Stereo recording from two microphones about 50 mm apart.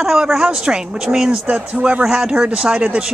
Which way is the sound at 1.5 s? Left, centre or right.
Right.